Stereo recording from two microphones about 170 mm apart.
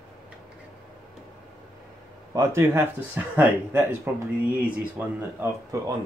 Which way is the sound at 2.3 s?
15° right (ahead or behind).